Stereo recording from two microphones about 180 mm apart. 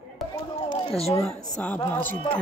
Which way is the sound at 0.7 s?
35° left (ahead or behind).